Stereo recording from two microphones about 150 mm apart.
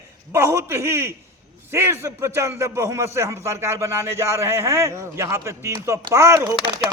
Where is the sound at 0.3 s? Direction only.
15° right (ahead or behind).